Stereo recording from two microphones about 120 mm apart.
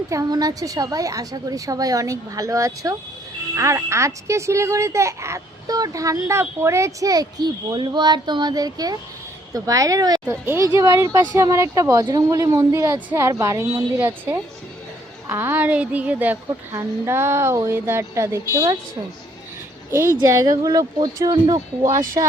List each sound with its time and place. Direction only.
0.1 s speech: 30° right (ahead or behind)
10.2 s speech: 20° right (ahead or behind)
19.9 s speech: 20° right (ahead or behind)